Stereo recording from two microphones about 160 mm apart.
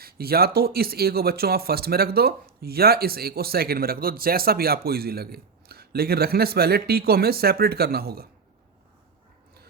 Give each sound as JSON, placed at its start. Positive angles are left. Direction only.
{"t": 0.0, "sound": "speech", "side_deg": -70}